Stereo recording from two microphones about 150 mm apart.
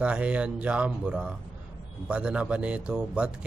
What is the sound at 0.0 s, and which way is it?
A man's voice, 10° right (ahead or behind).